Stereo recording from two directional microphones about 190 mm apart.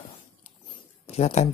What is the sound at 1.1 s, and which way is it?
Speech, 35° left (ahead or behind).